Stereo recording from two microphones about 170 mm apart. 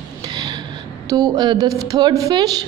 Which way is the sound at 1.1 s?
25° right (ahead or behind).